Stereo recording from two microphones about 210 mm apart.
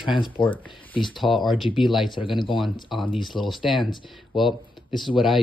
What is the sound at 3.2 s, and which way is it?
Speech, centre (ahead or behind).